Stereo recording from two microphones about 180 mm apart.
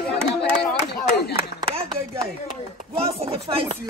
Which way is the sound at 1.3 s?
30° right (ahead or behind).